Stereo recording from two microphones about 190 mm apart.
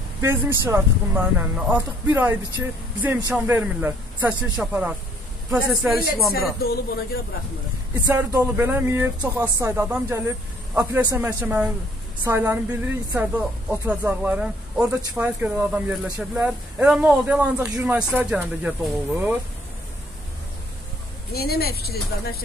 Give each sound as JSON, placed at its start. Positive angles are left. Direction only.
{"t": 0.2, "sound": "speech", "side_deg": -15}
{"t": 8.1, "sound": "speech", "side_deg": -15}
{"t": 21.3, "sound": "speech", "side_deg": 55}